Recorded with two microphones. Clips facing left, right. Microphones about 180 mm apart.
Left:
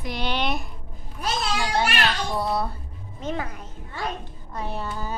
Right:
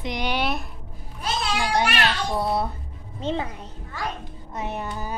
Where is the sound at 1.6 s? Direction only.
15° right (ahead or behind).